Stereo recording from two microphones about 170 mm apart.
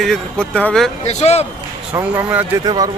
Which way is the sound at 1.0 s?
40° left (ahead or behind).